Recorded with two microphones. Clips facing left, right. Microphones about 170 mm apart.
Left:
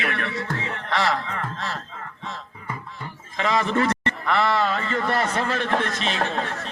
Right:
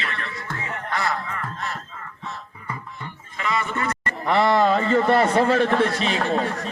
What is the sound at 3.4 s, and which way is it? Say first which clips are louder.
Speech: left 4 dB; 90° left.